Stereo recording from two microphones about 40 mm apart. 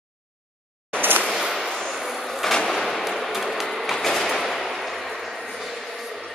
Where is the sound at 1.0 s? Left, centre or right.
Right.